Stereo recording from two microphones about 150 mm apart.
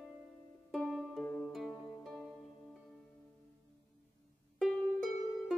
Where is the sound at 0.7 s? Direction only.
Centre (ahead or behind).